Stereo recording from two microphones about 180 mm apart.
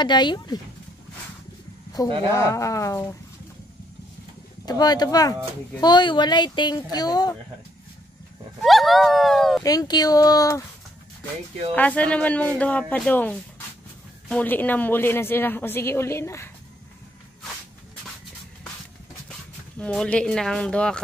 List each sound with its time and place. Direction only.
0.0 s speech: 25° left (ahead or behind)
2.3 s a woman's voice: 15° left (ahead or behind)
4.6 s speech: 20° left (ahead or behind)
8.6 s speech: centre (ahead or behind)
9.6 s speech: 20° left (ahead or behind)
11.7 s a woman's voice: 10° left (ahead or behind)
19.8 s speech: 5° left (ahead or behind)